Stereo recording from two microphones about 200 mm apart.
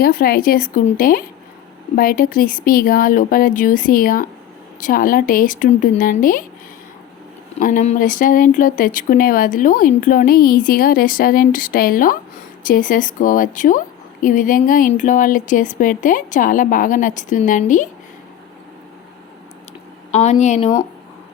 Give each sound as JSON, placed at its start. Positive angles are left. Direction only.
{"t": 0.0, "sound": "speech", "side_deg": 45}
{"t": 7.6, "sound": "a woman's voice", "side_deg": 40}
{"t": 20.1, "sound": "a woman's voice", "side_deg": 35}